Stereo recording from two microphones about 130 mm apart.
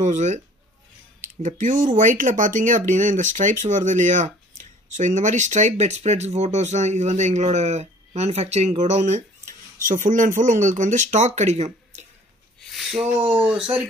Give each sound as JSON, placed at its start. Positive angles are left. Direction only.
{"t": 0.0, "sound": "speech", "side_deg": -65}
{"t": 1.4, "sound": "speech", "side_deg": -80}
{"t": 12.5, "sound": "a sound", "side_deg": 0}
{"t": 13.3, "sound": "speech", "side_deg": -5}